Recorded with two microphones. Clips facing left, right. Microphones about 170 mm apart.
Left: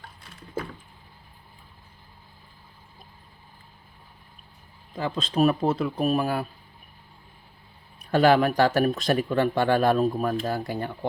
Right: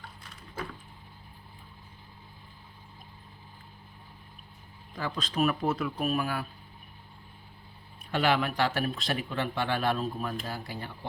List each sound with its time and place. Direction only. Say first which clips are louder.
4.9 s speech: left 6 dB; 25° left (ahead or behind)
8.1 s speech: left 8 dB; 40° left (ahead or behind)